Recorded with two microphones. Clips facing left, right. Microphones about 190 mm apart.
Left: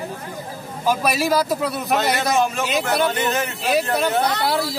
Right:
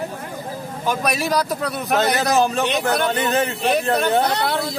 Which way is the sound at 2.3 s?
35° right (ahead or behind).